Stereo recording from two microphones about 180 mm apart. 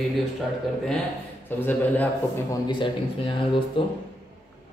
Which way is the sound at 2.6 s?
25° left (ahead or behind).